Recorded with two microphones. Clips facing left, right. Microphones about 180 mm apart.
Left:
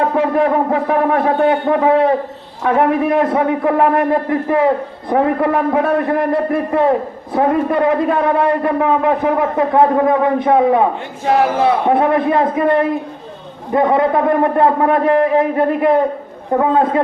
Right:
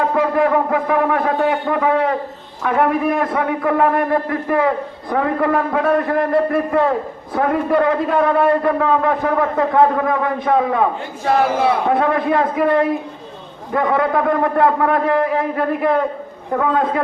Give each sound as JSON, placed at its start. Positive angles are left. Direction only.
{"t": 0.3, "sound": "a man's voice", "side_deg": 25}
{"t": 11.9, "sound": "a man's voice", "side_deg": 20}